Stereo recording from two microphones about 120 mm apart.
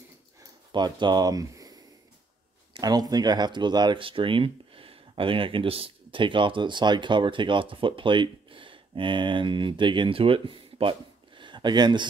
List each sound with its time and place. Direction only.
0.7 s speech: 40° right (ahead or behind)